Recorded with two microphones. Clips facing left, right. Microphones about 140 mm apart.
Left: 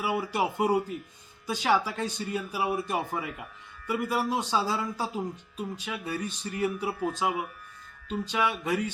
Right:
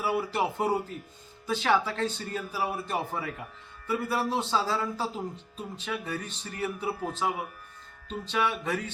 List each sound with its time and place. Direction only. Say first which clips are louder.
0.0 s speech: even; 15° left (ahead or behind)